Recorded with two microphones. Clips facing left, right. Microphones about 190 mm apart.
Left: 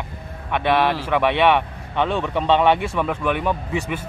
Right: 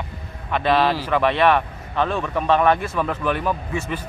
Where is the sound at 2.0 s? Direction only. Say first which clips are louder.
Left 1 dB; 20° left (ahead or behind).